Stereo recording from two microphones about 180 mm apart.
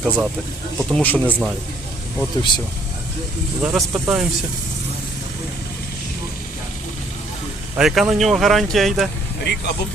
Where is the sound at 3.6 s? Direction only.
5° right (ahead or behind).